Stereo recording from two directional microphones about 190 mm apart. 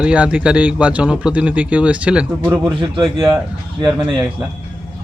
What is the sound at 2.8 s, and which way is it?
Speech, 25° right (ahead or behind).